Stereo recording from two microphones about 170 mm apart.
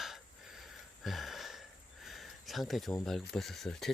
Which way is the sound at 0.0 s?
Centre (ahead or behind).